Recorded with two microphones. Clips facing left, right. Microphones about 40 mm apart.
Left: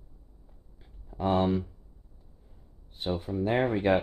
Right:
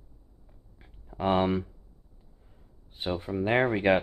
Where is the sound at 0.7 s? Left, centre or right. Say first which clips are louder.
Right 1 dB; right.